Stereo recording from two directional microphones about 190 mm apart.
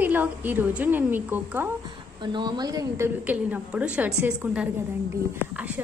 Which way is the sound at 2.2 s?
25° right (ahead or behind).